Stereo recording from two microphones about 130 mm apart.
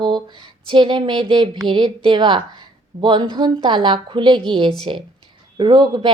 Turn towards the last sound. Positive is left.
turn(degrees=-35)  # may be behind; listen again after turning